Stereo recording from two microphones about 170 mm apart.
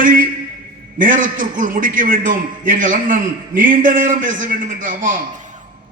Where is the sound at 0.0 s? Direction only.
50° right (ahead or behind).